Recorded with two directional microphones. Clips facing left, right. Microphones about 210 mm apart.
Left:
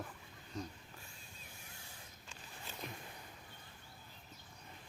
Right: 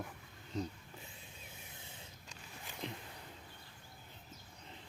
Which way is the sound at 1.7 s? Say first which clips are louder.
Right 2 dB; 20° right (ahead or behind).